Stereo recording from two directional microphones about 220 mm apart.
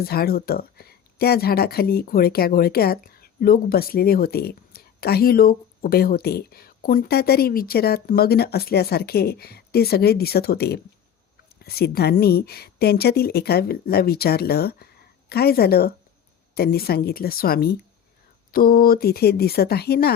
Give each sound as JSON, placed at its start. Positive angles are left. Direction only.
{"t": 0.0, "sound": "speech", "side_deg": 45}